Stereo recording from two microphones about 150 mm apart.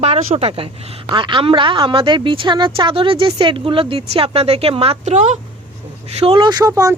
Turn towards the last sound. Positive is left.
turn(degrees=-25)  # may be behind; listen again after turning